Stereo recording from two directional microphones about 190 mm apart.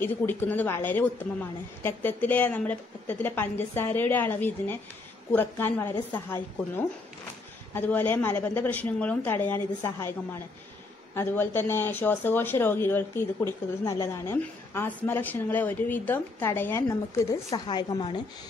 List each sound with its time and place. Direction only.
0.0 s speech: 10° left (ahead or behind)
1.8 s speech: 10° left (ahead or behind)
11.1 s a woman's voice: 10° left (ahead or behind)